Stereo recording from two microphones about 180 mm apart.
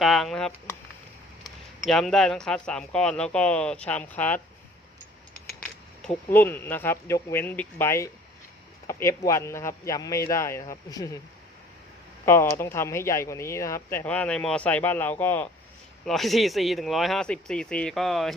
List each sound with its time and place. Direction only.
0.0 s speech: centre (ahead or behind)
5.6 s speech: 5° left (ahead or behind)
12.2 s speech: 15° left (ahead or behind)
16.0 s speech: centre (ahead or behind)